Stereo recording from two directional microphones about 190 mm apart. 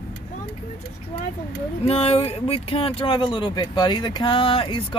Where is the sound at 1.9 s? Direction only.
30° left (ahead or behind).